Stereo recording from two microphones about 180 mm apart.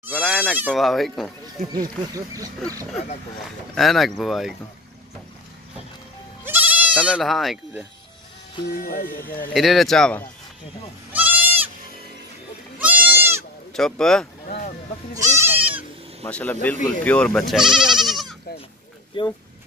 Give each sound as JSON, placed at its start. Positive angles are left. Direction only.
{"t": 0.0, "sound": "bleat", "side_deg": -10}
{"t": 0.6, "sound": "speech", "side_deg": -5}
{"t": 1.7, "sound": "speech", "side_deg": -20}
{"t": 3.7, "sound": "speech", "side_deg": 0}
{"t": 6.4, "sound": "bleat", "side_deg": -10}
{"t": 8.6, "sound": "speech", "side_deg": 55}
{"t": 9.5, "sound": "speech", "side_deg": 0}
{"t": 11.1, "sound": "goat", "side_deg": -10}
{"t": 12.7, "sound": "goat", "side_deg": -10}
{"t": 13.7, "sound": "speech", "side_deg": 5}
{"t": 15.1, "sound": "goat", "side_deg": -15}
{"t": 16.3, "sound": "speech", "side_deg": 5}
{"t": 19.1, "sound": "speech", "side_deg": 30}